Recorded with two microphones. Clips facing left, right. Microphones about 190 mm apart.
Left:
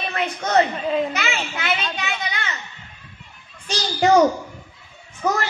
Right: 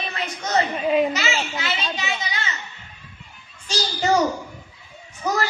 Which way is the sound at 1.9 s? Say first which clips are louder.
Left 1 dB; 60° left (ahead or behind).